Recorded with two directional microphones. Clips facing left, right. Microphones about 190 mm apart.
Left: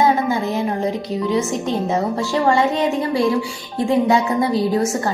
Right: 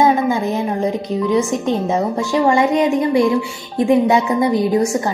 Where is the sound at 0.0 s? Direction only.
15° right (ahead or behind).